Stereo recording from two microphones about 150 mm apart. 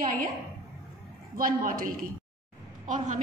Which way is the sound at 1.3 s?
75° right (ahead or behind).